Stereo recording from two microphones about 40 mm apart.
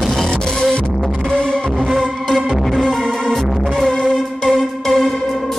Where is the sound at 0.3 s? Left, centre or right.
Left.